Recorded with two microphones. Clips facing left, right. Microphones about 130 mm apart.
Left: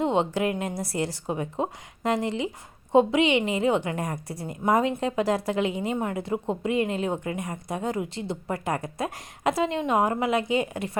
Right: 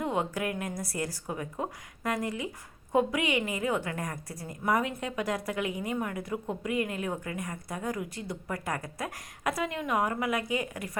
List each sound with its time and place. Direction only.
0.0 s a woman's voice: 25° left (ahead or behind)